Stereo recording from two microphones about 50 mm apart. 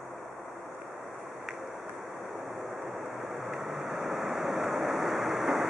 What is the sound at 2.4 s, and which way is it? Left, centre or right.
Vehicle, centre.